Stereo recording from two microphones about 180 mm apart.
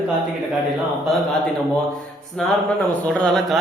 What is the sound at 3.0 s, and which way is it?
Speech, centre (ahead or behind).